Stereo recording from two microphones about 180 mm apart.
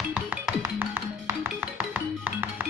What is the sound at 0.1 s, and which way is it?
Music, 5° right (ahead or behind).